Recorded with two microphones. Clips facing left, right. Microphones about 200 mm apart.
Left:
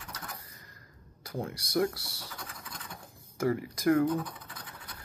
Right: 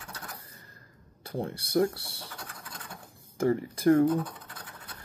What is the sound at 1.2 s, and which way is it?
Speech, 30° right (ahead or behind).